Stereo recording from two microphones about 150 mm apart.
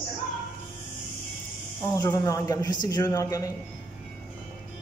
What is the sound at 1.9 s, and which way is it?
A man's voice, 25° left (ahead or behind).